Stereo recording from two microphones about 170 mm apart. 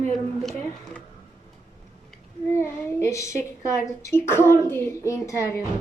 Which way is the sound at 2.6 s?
15° left (ahead or behind).